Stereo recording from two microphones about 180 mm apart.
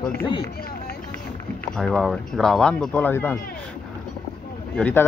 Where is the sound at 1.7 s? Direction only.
Centre (ahead or behind).